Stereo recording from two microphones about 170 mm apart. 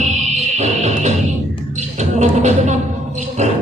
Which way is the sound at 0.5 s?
40° right (ahead or behind).